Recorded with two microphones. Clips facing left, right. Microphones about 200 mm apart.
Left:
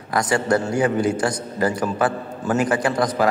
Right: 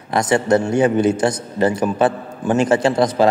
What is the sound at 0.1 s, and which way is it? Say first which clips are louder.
A man's voice: right 4 dB; 20° right (ahead or behind).